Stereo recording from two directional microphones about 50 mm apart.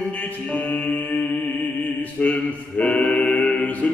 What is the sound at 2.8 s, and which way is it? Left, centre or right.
Choir, left.